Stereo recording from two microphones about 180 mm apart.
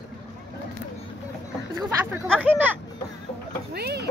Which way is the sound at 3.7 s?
60° right (ahead or behind).